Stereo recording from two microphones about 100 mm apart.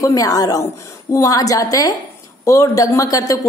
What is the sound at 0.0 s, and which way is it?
Speech, 35° left (ahead or behind).